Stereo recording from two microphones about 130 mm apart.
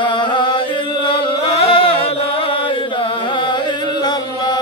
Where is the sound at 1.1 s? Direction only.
40° left (ahead or behind).